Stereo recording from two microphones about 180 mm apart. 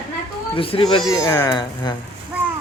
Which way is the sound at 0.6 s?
30° left (ahead or behind).